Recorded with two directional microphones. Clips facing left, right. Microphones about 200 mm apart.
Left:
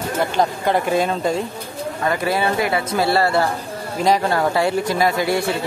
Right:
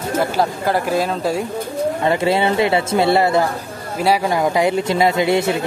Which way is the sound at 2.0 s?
25° right (ahead or behind).